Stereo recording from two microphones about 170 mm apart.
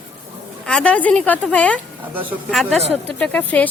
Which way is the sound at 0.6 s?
5° left (ahead or behind).